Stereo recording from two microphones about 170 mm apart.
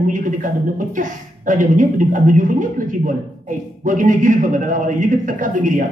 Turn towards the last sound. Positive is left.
turn(degrees=-50)  # may be behind; listen again after turning